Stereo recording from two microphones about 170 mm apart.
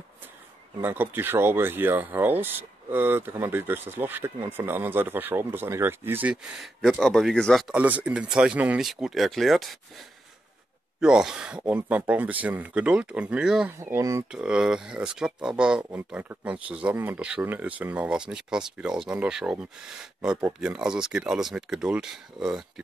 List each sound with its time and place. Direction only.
0.7 s speech: 15° right (ahead or behind)
11.0 s speech: 5° right (ahead or behind)
13.7 s speech: 15° right (ahead or behind)
14.3 s speech: 5° right (ahead or behind)